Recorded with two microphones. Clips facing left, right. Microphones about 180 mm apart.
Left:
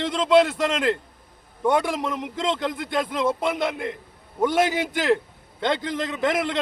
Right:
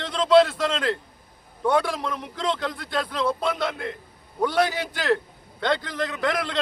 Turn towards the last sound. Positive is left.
turn(degrees=20)  # may be behind; listen again after turning